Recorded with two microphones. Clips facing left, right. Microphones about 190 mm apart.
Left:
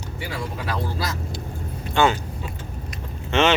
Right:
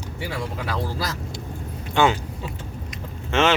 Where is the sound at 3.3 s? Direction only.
5° right (ahead or behind).